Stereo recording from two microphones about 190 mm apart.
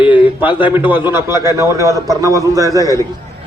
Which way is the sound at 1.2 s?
15° right (ahead or behind).